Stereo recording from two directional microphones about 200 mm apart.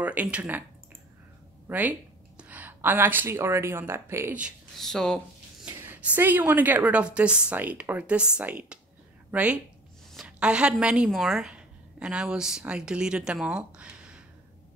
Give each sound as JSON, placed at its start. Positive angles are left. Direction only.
{"t": 0.0, "sound": "a woman's voice", "side_deg": -5}
{"t": 1.7, "sound": "speech", "side_deg": -10}
{"t": 5.7, "sound": "a woman's voice", "side_deg": -10}